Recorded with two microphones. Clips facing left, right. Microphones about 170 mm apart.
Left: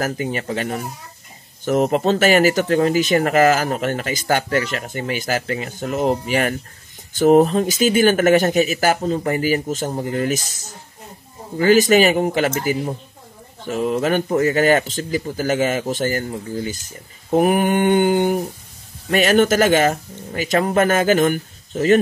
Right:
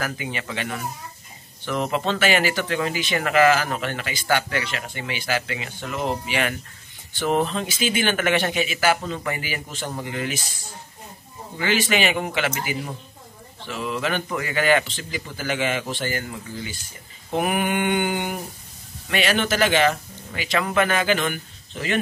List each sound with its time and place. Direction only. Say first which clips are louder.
0.0 s a man's voice: left 7 dB; 40° left (ahead or behind)
11.5 s a man's voice: left 10 dB; 40° left (ahead or behind)